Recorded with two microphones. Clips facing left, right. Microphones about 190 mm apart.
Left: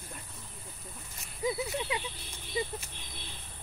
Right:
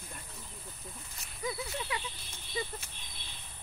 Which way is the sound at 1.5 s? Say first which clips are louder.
Left 5 dB; 20° left (ahead or behind).